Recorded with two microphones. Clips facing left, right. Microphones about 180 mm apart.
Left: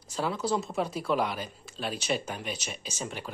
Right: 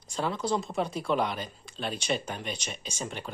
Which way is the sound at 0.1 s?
5° left (ahead or behind).